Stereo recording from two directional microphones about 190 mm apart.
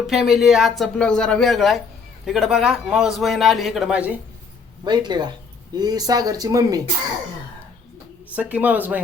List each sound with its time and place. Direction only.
0.1 s a man's voice: centre (ahead or behind)
4.8 s speech: 20° right (ahead or behind)
8.4 s speech: 10° right (ahead or behind)